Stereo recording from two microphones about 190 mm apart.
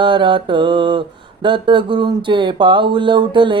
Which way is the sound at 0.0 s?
25° right (ahead or behind).